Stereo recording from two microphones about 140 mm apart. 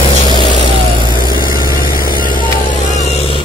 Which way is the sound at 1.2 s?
90° left.